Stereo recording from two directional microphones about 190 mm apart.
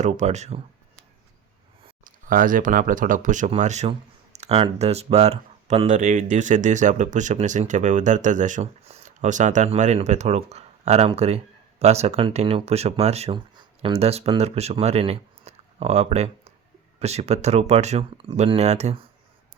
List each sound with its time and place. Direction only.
0.0 s speech: 35° right (ahead or behind)
2.2 s speech: 45° right (ahead or behind)